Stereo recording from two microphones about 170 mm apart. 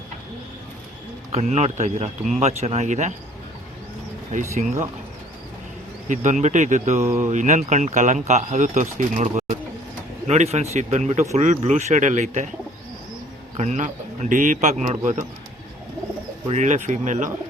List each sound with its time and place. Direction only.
1.3 s speech: 40° right (ahead or behind)
4.3 s speech: 45° right (ahead or behind)
6.1 s speech: 45° right (ahead or behind)
13.6 s speech: 45° right (ahead or behind)
16.5 s speech: 45° right (ahead or behind)